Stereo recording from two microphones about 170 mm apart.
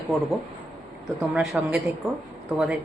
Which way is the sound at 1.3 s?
10° right (ahead or behind).